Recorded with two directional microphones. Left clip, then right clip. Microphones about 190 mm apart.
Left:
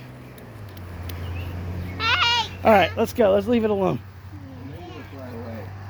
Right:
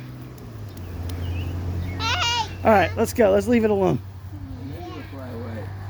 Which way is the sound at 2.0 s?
40° right (ahead or behind).